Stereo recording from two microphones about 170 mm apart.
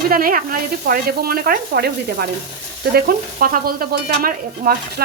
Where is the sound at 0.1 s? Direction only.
60° right (ahead or behind).